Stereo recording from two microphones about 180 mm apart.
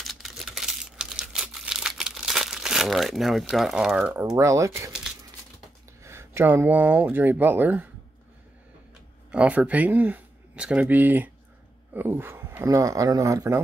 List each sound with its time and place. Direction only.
0.0 s crumpling: centre (ahead or behind); by 4.9 s 15° right (ahead or behind)
6.0 s speech: 15° right (ahead or behind)
9.3 s speech: 10° right (ahead or behind)